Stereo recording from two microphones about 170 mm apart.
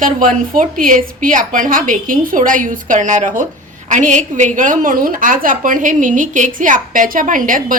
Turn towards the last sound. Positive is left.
turn(degrees=-50)  # may be behind; listen again after turning